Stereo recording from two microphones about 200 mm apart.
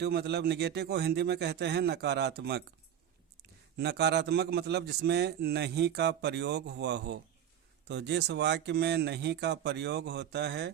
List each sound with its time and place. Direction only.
0.0 s a man's voice: 55° right (ahead or behind)
3.8 s a man's voice: 55° right (ahead or behind)